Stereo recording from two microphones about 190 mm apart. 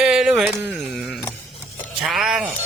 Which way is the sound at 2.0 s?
5° right (ahead or behind).